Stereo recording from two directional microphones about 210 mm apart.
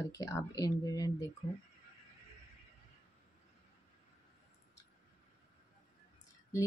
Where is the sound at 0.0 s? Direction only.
15° left (ahead or behind).